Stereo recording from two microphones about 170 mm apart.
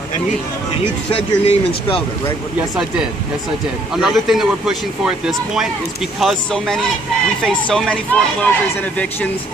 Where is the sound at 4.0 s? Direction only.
Centre (ahead or behind).